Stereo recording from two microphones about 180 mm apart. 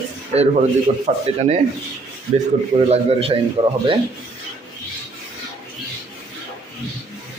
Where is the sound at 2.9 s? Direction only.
30° right (ahead or behind).